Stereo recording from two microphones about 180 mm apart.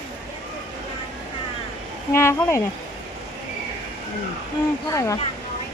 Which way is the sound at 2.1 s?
15° left (ahead or behind).